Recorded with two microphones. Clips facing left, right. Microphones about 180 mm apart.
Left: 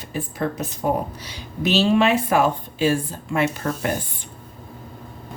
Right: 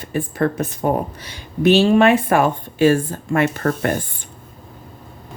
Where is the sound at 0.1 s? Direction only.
55° right (ahead or behind).